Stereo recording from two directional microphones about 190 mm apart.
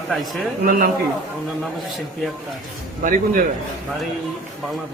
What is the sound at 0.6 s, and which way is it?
Speech, 50° right (ahead or behind).